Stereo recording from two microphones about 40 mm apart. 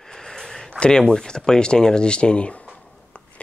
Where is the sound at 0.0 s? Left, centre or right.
Centre.